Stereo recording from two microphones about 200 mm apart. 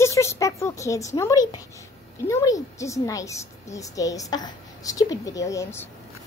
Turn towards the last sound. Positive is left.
turn(degrees=15)  # may be behind; listen again after turning